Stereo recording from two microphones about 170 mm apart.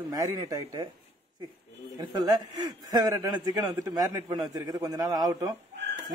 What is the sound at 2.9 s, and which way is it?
A man's voice, 20° right (ahead or behind).